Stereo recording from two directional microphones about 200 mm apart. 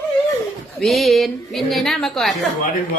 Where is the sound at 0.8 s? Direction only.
Centre (ahead or behind).